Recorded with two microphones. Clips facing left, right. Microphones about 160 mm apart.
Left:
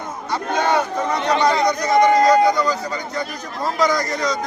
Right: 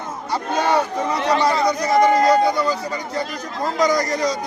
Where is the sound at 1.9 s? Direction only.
5° right (ahead or behind).